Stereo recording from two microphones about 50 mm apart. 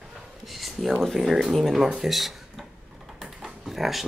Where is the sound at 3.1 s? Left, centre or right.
Centre.